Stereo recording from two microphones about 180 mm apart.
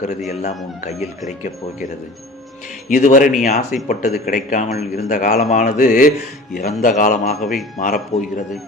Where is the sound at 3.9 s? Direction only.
55° left (ahead or behind).